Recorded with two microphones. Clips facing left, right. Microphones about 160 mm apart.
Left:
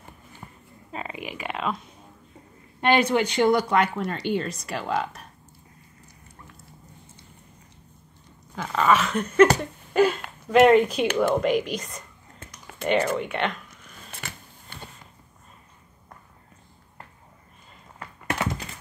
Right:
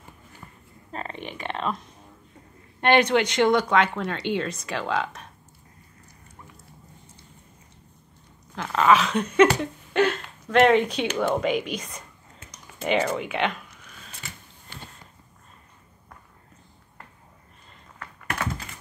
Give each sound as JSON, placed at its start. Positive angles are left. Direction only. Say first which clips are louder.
{"t": 0.4, "sound": "a sound", "louder": "left 3 dB", "side_deg": 30}
{"t": 0.9, "sound": "a sound", "louder": "even", "side_deg": 5}
{"t": 2.9, "sound": "speech", "louder": "right 1 dB", "side_deg": -60}
{"t": 3.4, "sound": "speech", "louder": "even", "side_deg": 5}
{"t": 8.5, "sound": "speech", "louder": "right 2 dB", "side_deg": -5}
{"t": 17.9, "sound": "computer keyboard", "louder": "left 3 dB", "side_deg": 20}